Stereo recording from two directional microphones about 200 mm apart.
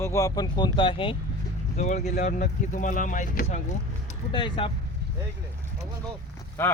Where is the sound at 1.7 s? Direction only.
35° left (ahead or behind).